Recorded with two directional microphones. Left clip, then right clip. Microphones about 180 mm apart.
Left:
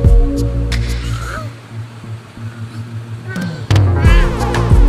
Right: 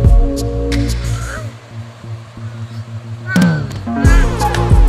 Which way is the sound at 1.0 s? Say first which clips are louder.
Left 1 dB; 15° right (ahead or behind).